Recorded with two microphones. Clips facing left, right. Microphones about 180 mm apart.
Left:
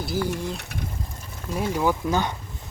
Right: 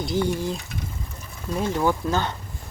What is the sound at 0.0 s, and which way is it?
Speech, 5° left (ahead or behind).